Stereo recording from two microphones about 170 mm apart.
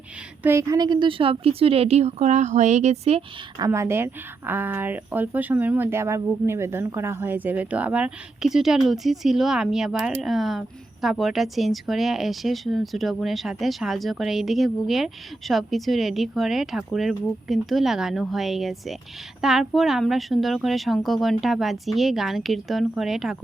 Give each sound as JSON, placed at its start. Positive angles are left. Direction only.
{"t": 0.4, "sound": "a woman's voice", "side_deg": -15}
{"t": 3.6, "sound": "speech", "side_deg": -15}